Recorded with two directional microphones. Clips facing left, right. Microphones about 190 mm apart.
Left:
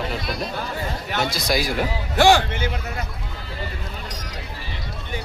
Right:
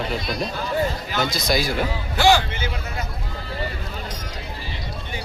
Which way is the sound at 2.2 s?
65° left (ahead or behind).